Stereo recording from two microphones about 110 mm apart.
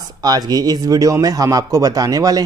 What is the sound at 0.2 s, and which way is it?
Speech, 35° right (ahead or behind).